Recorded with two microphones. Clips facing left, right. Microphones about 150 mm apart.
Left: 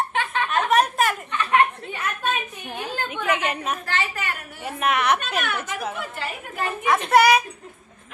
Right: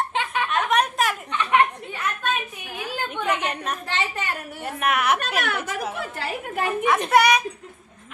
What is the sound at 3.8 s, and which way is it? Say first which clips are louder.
Speech: even; 25° right (ahead or behind).